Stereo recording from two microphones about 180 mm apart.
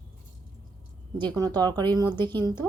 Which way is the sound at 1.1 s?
25° right (ahead or behind).